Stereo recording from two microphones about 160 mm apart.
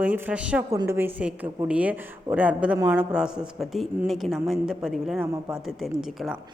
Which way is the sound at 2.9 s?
5° right (ahead or behind).